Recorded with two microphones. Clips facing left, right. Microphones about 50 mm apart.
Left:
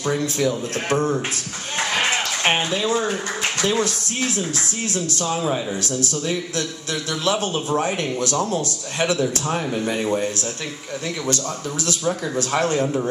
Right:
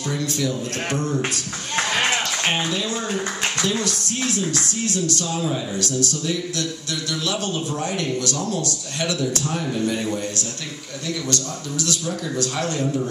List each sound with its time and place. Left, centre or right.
0.0 s speech: left
2.4 s speech: left
11.8 s speech: left